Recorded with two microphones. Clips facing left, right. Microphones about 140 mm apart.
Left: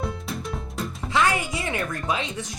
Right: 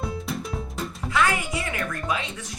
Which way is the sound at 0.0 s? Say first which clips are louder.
Even; centre (ahead or behind).